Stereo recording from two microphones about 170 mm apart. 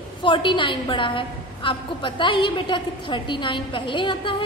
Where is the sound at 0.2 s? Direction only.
30° left (ahead or behind).